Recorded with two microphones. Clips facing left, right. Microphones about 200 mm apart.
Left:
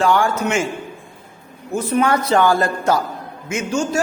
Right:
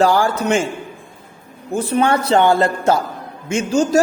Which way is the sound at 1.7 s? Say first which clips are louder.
Right 1 dB; 30° right (ahead or behind).